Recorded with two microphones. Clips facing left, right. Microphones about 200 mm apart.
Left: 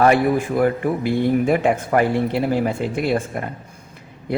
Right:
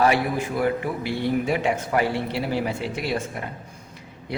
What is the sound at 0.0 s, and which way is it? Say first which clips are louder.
A man's voice: left 5 dB; 50° left (ahead or behind).